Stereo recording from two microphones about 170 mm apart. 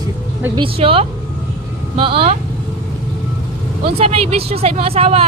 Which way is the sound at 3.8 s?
35° right (ahead or behind).